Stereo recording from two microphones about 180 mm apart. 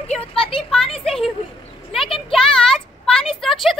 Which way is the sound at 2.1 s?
30° left (ahead or behind).